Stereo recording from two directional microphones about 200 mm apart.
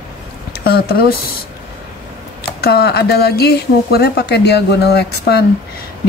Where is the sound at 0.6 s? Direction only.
50° left (ahead or behind).